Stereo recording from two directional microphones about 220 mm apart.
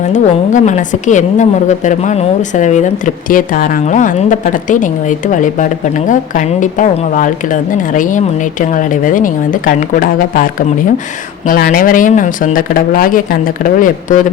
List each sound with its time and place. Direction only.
0.1 s a woman's voice: 35° left (ahead or behind)